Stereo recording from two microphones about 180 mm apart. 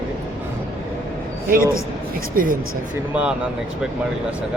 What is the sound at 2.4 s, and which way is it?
Speech, 50° right (ahead or behind).